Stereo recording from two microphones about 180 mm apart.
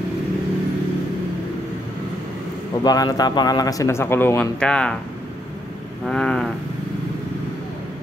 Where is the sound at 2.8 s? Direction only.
20° left (ahead or behind); by 4.9 s 5° left (ahead or behind).